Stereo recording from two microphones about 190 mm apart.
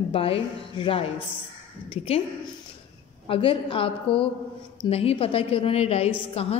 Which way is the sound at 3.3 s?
30° left (ahead or behind).